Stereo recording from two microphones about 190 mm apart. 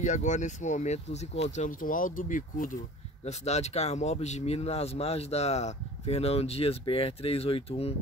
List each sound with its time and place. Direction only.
0.0 s speech: 40° left (ahead or behind)